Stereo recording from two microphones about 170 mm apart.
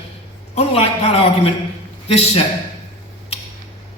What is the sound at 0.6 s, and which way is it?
A man's voice, 35° left (ahead or behind).